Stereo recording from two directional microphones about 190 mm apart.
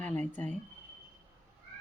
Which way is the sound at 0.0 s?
5° left (ahead or behind).